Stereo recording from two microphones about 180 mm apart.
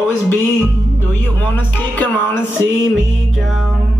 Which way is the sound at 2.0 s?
10° left (ahead or behind).